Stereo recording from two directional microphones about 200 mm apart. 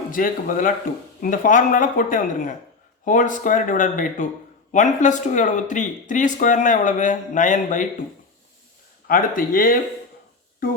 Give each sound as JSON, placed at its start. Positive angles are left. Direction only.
{"t": 0.1, "sound": "speech", "side_deg": 45}
{"t": 9.0, "sound": "speech", "side_deg": 45}